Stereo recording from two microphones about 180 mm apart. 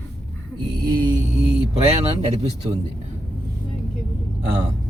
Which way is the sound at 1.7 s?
35° right (ahead or behind).